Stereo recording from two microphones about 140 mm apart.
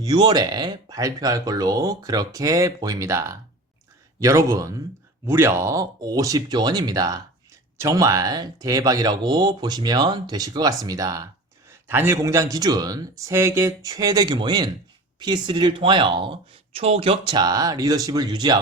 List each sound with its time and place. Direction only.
0.0 s speech: 30° right (ahead or behind)